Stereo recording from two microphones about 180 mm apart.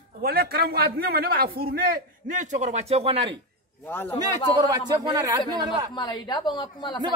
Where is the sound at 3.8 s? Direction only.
10° left (ahead or behind).